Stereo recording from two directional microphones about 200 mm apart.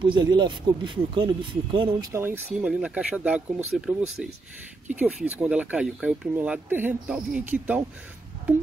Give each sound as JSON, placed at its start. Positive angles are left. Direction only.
{"t": 0.0, "sound": "speech", "side_deg": -20}
{"t": 2.1, "sound": "speech", "side_deg": -10}